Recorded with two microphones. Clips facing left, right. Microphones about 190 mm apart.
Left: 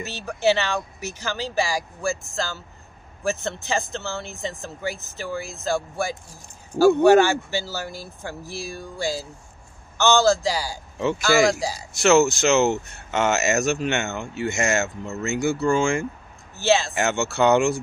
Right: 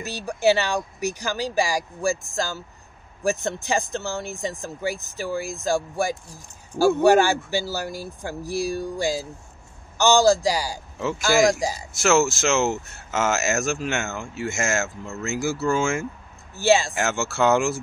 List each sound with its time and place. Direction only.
0.1 s speech: 15° right (ahead or behind)
11.9 s speech: centre (ahead or behind)
16.9 s speech: centre (ahead or behind)